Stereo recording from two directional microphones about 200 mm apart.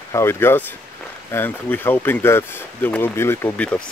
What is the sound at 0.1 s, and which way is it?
Speech, 10° left (ahead or behind).